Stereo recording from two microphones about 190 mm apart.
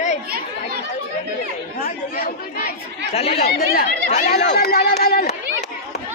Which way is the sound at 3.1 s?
30° left (ahead or behind).